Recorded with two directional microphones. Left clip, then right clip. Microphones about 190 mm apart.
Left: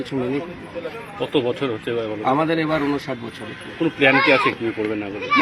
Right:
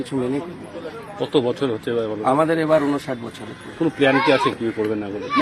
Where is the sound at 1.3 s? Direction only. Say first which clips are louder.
Right 1 dB; 60° right (ahead or behind).